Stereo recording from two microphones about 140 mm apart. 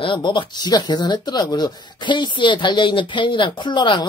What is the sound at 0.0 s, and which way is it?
Speech, 35° left (ahead or behind).